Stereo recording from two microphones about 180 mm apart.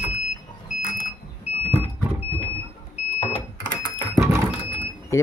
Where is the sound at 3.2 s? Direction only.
35° left (ahead or behind).